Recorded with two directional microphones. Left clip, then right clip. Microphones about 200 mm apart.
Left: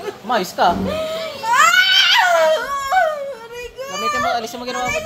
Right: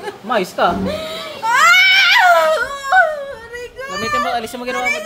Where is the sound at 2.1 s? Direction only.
15° right (ahead or behind).